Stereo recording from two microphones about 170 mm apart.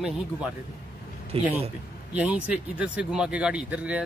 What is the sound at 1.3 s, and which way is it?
Speech, 35° right (ahead or behind).